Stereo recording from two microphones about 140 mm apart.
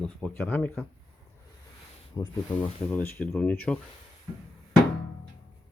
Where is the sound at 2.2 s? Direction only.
25° left (ahead or behind).